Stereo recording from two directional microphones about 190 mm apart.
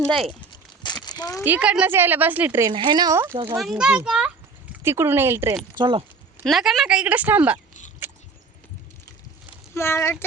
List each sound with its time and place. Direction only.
0.5 s a sound: 25° left (ahead or behind)
1.0 s speech: 20° left (ahead or behind)
1.5 s a woman's voice: 5° right (ahead or behind)
2.7 s speech: 25° right (ahead or behind)
3.6 s a woman's voice: 5° right (ahead or behind)
5.7 s speech: 25° right (ahead or behind)
6.4 s a woman's voice: centre (ahead or behind)
8.0 s a sound: 15° right (ahead or behind)
9.7 s speech: 15° left (ahead or behind)